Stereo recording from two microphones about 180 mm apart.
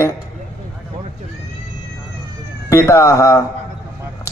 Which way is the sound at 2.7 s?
15° left (ahead or behind).